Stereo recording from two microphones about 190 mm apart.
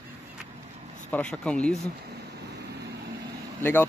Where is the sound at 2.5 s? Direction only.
60° right (ahead or behind).